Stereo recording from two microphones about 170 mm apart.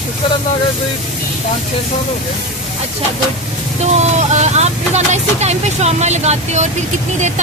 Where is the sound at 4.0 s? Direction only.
40° right (ahead or behind).